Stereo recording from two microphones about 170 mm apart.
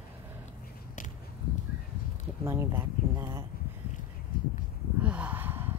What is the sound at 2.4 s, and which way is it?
Speech, 15° right (ahead or behind).